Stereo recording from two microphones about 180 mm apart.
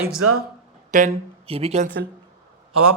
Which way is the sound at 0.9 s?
40° right (ahead or behind).